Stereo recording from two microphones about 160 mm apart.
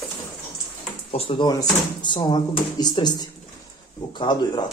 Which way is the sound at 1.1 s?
35° left (ahead or behind).